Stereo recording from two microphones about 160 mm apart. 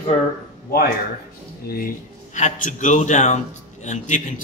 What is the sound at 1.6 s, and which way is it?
Speech, 70° left (ahead or behind).